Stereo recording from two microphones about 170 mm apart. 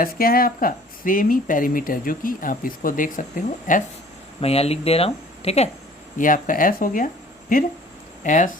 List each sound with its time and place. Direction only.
0.0 s speech: 60° left (ahead or behind)
4.4 s speech: 35° left (ahead or behind)
6.1 s speech: 50° left (ahead or behind)
8.2 s speech: 50° left (ahead or behind)